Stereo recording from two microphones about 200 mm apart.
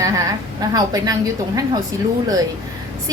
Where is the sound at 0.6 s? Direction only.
20° right (ahead or behind).